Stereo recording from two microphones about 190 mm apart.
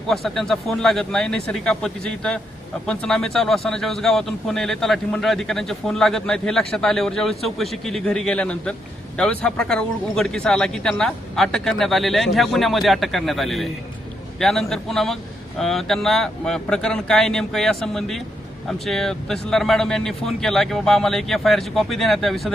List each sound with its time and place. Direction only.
0.1 s speech: centre (ahead or behind)